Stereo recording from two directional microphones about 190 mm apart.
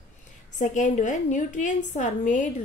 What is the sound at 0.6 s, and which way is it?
A woman's voice, 40° left (ahead or behind).